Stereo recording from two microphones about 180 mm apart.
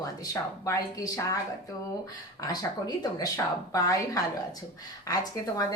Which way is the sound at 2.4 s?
20° left (ahead or behind).